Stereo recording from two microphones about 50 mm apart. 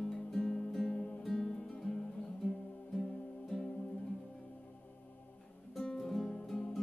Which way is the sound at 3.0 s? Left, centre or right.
Centre.